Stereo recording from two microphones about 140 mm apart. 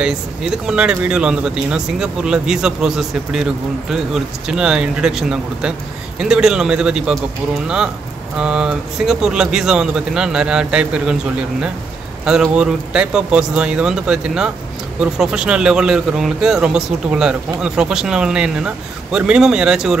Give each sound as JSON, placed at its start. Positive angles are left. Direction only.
{"t": 0.0, "sound": "speech", "side_deg": -5}
{"t": 12.3, "sound": "speech", "side_deg": -5}